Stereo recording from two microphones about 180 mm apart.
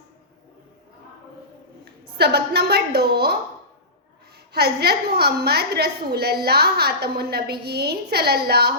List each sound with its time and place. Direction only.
1.8 s a woman's voice: 65° right (ahead or behind)
4.5 s a woman's voice: 65° right (ahead or behind)